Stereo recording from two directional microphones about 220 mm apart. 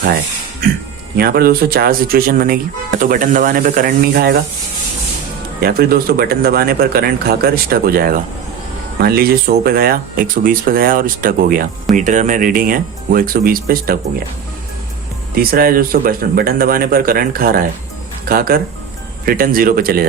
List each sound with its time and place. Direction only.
1.1 s speech: 45° right (ahead or behind)
5.5 s speech: 45° right (ahead or behind)
15.4 s speech: 40° right (ahead or behind)